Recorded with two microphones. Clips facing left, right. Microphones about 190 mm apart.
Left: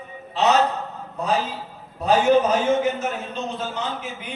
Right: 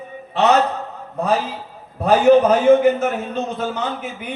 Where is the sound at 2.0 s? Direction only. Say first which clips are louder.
Right 5 dB; 60° right (ahead or behind).